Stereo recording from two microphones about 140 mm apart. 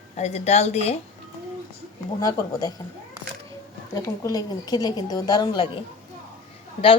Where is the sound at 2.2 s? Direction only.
30° left (ahead or behind).